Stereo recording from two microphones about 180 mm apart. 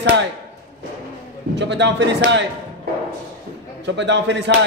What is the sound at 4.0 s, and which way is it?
Speech, 80° right.